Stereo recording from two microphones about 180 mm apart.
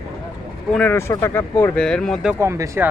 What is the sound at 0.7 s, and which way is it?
Speech, 10° left (ahead or behind).